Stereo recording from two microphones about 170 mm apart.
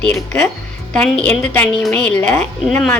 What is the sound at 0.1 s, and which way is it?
A woman's voice, 5° left (ahead or behind).